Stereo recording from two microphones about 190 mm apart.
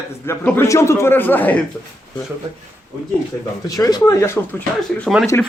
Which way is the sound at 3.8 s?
20° left (ahead or behind).